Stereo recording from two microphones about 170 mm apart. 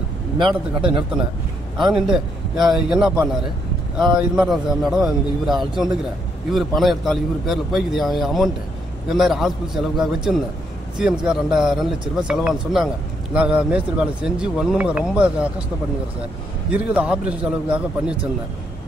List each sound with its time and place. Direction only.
0.5 s speech: 5° right (ahead or behind)
4.4 s speech: centre (ahead or behind)
16.9 s a man's voice: 5° right (ahead or behind)